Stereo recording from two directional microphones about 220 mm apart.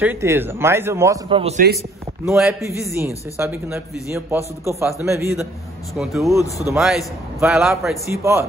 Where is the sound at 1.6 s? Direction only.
45° right (ahead or behind).